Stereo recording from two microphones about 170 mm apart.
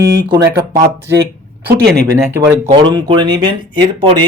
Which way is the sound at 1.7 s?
70° right (ahead or behind).